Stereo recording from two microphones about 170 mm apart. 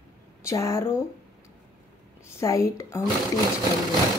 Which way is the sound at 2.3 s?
15° left (ahead or behind).